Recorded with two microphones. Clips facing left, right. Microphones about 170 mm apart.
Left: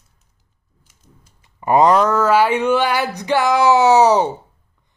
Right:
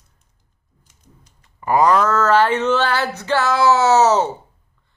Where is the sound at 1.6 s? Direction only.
20° left (ahead or behind).